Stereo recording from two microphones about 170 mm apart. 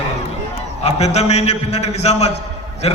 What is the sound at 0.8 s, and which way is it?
A man's voice, 40° left (ahead or behind).